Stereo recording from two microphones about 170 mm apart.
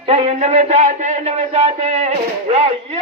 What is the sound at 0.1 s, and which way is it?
Speech, 40° right (ahead or behind).